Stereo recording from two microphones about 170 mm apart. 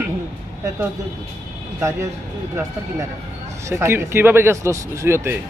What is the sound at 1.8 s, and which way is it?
Speech, 15° right (ahead or behind).